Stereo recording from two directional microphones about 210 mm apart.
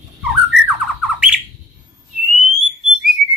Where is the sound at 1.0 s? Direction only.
5° right (ahead or behind).